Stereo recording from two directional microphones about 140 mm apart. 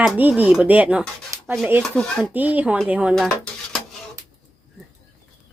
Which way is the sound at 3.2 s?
5° left (ahead or behind).